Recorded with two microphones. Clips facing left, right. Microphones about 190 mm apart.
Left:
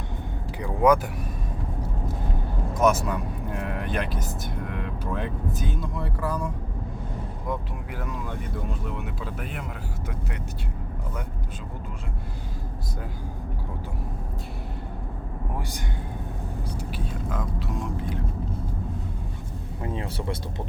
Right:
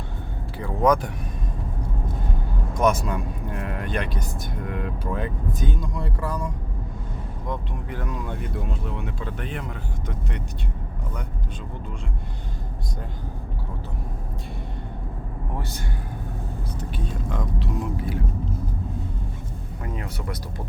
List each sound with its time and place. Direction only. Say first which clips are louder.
0.6 s vehicle: even; 10° left (ahead or behind)
2.7 s speech: even; 5° left (ahead or behind)
16.9 s speech: right 3 dB; 5° left (ahead or behind)
19.8 s speech: left 2 dB; 30° left (ahead or behind)